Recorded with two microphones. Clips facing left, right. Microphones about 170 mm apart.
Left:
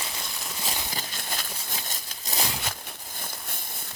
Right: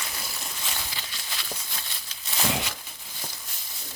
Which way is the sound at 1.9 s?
40° left (ahead or behind).